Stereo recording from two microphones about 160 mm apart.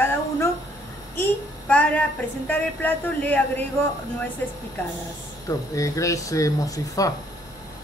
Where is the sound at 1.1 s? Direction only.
10° left (ahead or behind).